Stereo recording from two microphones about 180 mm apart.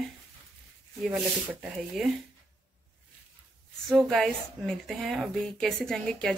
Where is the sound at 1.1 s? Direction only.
5° right (ahead or behind).